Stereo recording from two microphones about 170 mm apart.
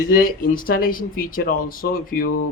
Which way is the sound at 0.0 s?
55° left (ahead or behind).